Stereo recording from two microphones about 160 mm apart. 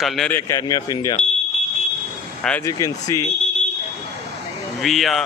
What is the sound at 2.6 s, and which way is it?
Speech, 20° left (ahead or behind).